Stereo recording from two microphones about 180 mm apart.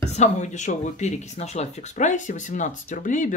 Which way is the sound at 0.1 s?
40° left (ahead or behind).